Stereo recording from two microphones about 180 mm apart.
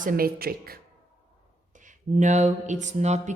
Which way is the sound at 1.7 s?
45° right (ahead or behind).